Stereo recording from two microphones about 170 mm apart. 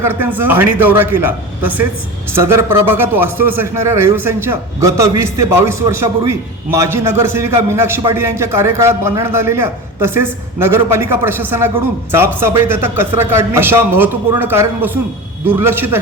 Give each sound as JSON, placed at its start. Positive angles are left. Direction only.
{"t": 0.0, "sound": "a man's voice", "side_deg": -10}